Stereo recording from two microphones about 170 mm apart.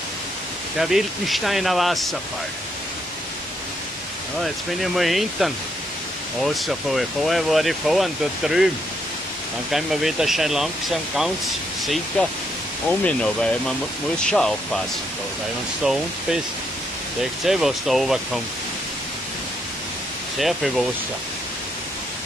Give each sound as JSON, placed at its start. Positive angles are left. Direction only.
{"t": 0.7, "sound": "speech", "side_deg": 0}
{"t": 4.9, "sound": "speech", "side_deg": 0}
{"t": 9.7, "sound": "speech", "side_deg": 0}
{"t": 15.8, "sound": "speech", "side_deg": -5}
{"t": 20.3, "sound": "speech", "side_deg": 0}